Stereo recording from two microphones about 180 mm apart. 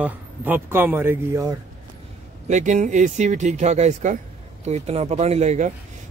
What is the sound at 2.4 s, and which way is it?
Speech, 40° right (ahead or behind).